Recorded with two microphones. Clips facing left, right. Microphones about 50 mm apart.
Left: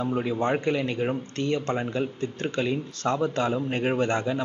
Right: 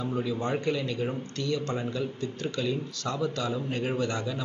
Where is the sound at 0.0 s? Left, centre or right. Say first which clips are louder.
Left 4 dB; left.